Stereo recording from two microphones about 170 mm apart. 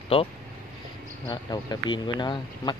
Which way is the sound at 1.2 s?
25° left (ahead or behind).